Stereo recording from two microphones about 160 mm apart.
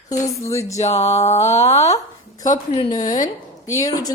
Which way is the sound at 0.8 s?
45° left (ahead or behind).